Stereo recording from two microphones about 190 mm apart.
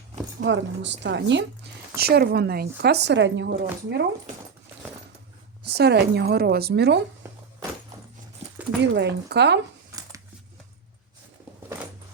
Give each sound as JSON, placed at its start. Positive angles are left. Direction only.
{"t": 0.3, "sound": "speech", "side_deg": -70}
{"t": 2.0, "sound": "speech", "side_deg": -55}
{"t": 5.6, "sound": "speech", "side_deg": -60}
{"t": 8.8, "sound": "speech", "side_deg": -65}
{"t": 9.9, "sound": "a sound", "side_deg": -15}